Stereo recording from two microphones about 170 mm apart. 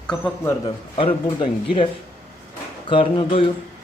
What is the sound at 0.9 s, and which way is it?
Speech, 30° left (ahead or behind).